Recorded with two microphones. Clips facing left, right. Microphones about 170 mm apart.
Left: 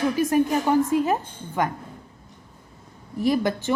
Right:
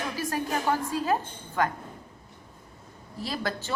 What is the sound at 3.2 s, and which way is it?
Speech, 15° left (ahead or behind).